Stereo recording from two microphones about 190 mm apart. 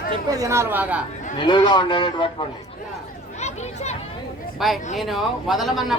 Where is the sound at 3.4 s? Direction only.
35° left (ahead or behind).